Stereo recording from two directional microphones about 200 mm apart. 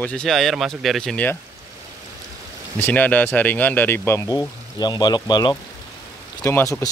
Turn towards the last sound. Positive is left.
turn(degrees=15)  # may be behind; listen again after turning